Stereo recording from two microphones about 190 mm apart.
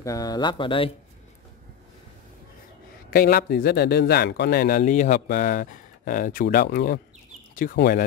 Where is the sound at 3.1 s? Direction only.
50° left (ahead or behind).